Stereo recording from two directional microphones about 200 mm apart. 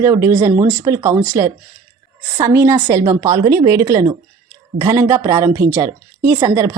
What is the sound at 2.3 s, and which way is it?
A woman's voice, 15° right (ahead or behind).